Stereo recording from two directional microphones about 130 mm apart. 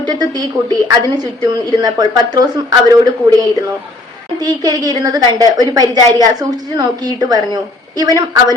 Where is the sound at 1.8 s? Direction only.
30° right (ahead or behind).